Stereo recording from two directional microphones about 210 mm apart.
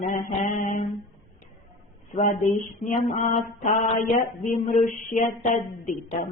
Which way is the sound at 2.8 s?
35° left (ahead or behind).